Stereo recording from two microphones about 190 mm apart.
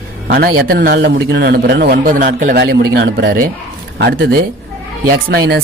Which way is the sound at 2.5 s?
55° right (ahead or behind).